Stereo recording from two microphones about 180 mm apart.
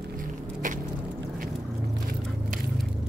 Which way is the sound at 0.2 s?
45° right (ahead or behind).